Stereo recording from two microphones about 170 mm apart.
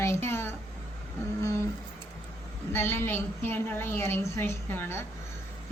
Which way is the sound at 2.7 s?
15° left (ahead or behind).